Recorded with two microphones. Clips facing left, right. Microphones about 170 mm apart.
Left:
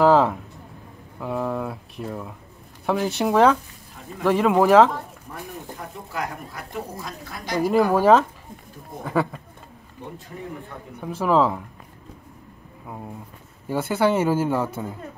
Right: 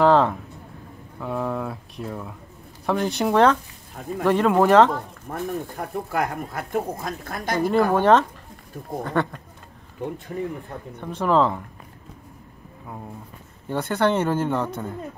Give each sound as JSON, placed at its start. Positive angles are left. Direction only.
{"t": 0.0, "sound": "a sound", "side_deg": 5}
{"t": 1.2, "sound": "speech", "side_deg": 0}
{"t": 5.3, "sound": "speech", "side_deg": -55}
{"t": 7.5, "sound": "speech", "side_deg": 5}
{"t": 11.0, "sound": "speech", "side_deg": 5}
{"t": 12.8, "sound": "speech", "side_deg": 5}